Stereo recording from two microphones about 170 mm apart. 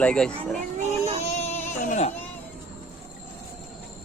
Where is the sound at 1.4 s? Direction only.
45° left (ahead or behind).